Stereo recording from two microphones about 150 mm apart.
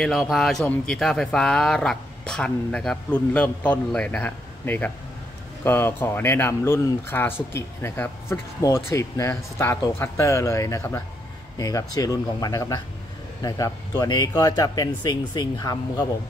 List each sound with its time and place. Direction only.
0.0 s speech: centre (ahead or behind); by 16.1 s 25° left (ahead or behind)